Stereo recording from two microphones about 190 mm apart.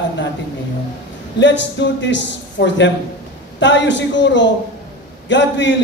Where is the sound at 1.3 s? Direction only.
70° left (ahead or behind).